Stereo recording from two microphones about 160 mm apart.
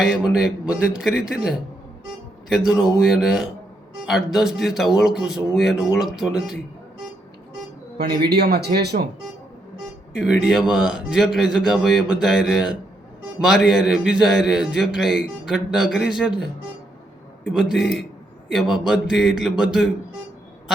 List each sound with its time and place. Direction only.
0.0 s a man's voice: centre (ahead or behind)
7.9 s a man's voice: 90° right
10.2 s a man's voice: 5° right (ahead or behind)
17.5 s a man's voice: centre (ahead or behind)